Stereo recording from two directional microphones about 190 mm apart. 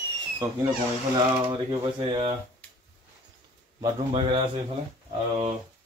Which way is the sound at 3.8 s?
25° right (ahead or behind).